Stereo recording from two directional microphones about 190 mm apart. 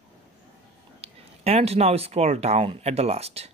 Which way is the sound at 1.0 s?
30° right (ahead or behind).